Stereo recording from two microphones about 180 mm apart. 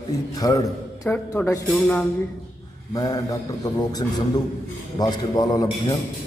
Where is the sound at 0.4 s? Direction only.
20° left (ahead or behind).